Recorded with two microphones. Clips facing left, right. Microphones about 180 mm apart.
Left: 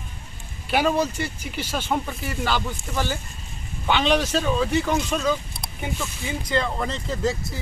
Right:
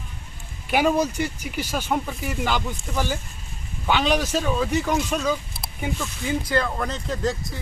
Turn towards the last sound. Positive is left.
turn(degrees=0)  # may be behind; listen again after turning